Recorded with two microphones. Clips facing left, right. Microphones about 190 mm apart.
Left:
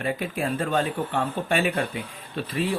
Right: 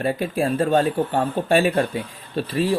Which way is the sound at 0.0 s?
35° right (ahead or behind).